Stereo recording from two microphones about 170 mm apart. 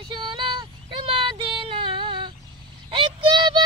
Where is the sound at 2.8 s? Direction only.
30° right (ahead or behind).